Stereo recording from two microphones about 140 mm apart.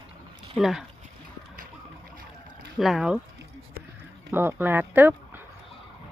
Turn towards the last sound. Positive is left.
turn(degrees=-15)  # may be behind; listen again after turning